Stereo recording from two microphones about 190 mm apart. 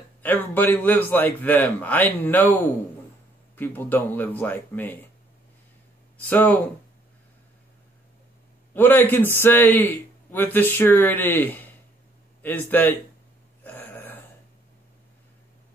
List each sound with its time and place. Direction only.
0.2 s a man's voice: 10° left (ahead or behind)
6.2 s a man's voice: 10° left (ahead or behind)
8.7 s a man's voice: 10° left (ahead or behind)
13.7 s a sound: 10° left (ahead or behind)